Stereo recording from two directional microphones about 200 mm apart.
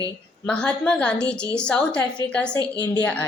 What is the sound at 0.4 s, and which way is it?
A woman's voice, 5° left (ahead or behind).